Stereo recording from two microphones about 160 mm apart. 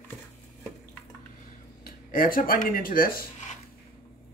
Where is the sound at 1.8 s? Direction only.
60° left (ahead or behind).